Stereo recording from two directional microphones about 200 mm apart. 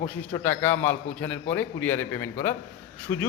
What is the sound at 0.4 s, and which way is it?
A man's voice, 10° left (ahead or behind).